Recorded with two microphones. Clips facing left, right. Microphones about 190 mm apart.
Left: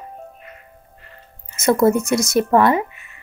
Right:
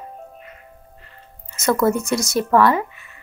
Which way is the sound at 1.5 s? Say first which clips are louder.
Left 3 dB; 25° left (ahead or behind).